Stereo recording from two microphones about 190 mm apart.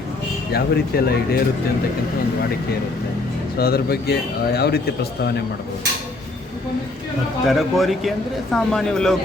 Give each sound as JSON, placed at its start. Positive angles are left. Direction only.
{"t": 0.5, "sound": "speech", "side_deg": 55}
{"t": 3.6, "sound": "speech", "side_deg": 55}
{"t": 7.4, "sound": "speech", "side_deg": 0}